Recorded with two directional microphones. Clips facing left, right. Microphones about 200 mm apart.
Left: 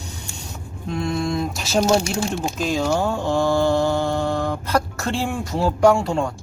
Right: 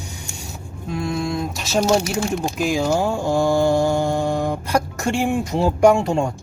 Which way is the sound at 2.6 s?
10° right (ahead or behind).